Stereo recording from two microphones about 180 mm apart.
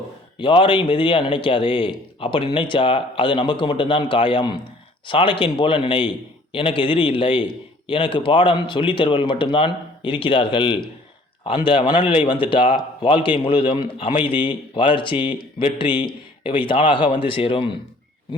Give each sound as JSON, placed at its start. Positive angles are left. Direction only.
{"t": 0.3, "sound": "a man's voice", "side_deg": 25}